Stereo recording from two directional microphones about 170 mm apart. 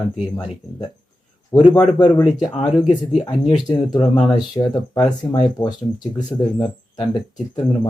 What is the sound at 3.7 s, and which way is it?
Speech, 25° left (ahead or behind).